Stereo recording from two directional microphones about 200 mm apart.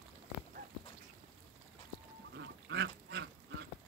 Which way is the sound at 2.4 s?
60° right (ahead or behind).